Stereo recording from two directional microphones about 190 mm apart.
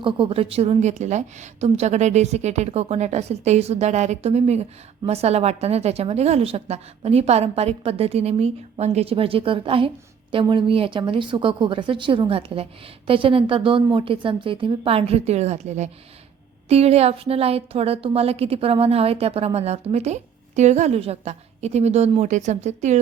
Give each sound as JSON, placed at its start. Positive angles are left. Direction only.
{"t": 0.0, "sound": "a woman's voice", "side_deg": -30}